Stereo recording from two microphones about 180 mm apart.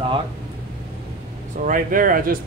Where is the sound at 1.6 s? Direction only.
50° right (ahead or behind).